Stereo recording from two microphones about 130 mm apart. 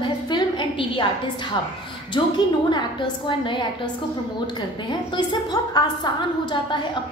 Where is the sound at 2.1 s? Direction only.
35° left (ahead or behind).